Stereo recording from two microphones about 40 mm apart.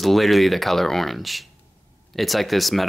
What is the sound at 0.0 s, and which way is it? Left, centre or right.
Speech, centre.